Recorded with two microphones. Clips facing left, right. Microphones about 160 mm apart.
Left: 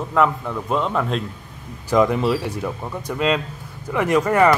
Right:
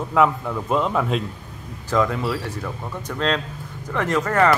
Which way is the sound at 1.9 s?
15° left (ahead or behind).